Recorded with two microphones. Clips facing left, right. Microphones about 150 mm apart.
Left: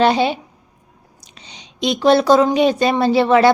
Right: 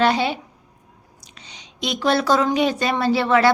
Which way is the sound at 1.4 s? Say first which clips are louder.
Left 6 dB; 20° left (ahead or behind).